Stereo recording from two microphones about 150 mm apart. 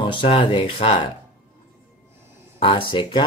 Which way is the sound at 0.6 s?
45° left (ahead or behind).